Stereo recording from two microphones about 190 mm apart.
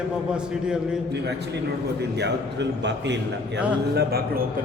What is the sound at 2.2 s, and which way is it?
Speech, 65° right (ahead or behind).